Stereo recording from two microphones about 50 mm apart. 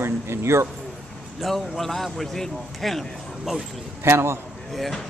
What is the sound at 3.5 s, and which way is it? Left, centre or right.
Speech, centre.